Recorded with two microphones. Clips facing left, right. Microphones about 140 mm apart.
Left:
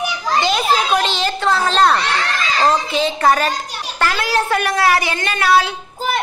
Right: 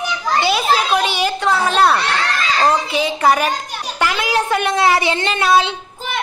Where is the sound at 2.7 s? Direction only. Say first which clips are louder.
Even; 10° right (ahead or behind).